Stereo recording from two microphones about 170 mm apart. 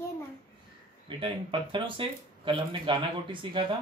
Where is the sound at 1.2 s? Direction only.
30° right (ahead or behind).